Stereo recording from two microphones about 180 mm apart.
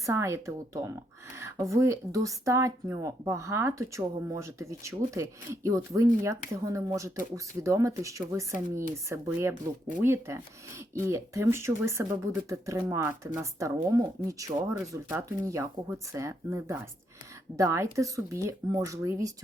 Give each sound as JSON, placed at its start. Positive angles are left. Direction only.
{"t": 0.0, "sound": "speech", "side_deg": -15}